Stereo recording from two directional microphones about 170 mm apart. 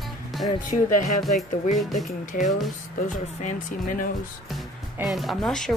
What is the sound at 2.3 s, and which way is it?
Speech, 45° left (ahead or behind).